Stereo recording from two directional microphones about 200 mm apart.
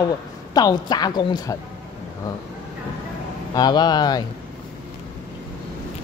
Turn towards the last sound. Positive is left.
turn(degrees=20)  # may be behind; listen again after turning